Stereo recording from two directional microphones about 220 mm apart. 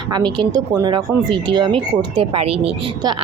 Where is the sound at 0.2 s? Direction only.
20° right (ahead or behind).